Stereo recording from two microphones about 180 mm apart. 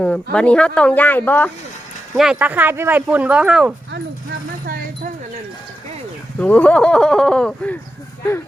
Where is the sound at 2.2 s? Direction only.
5° right (ahead or behind).